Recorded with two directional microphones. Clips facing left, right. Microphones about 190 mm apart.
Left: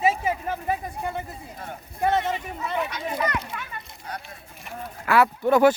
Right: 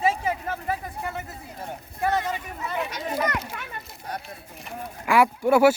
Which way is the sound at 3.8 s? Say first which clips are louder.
Right 2 dB; centre (ahead or behind).